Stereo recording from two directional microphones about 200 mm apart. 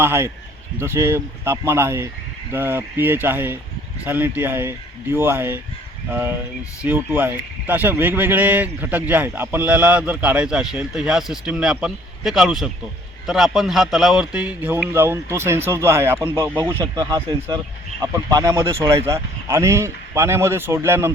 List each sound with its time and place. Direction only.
0.0 s speech: 10° right (ahead or behind)
19.0 s speech: 15° right (ahead or behind)